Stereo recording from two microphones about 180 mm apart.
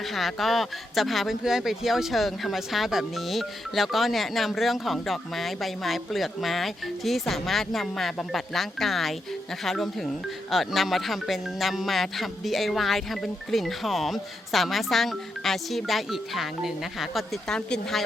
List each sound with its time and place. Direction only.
0.1 s speech: centre (ahead or behind)